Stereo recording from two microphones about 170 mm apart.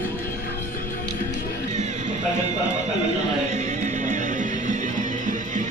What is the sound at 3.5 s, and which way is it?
Music, 45° right (ahead or behind).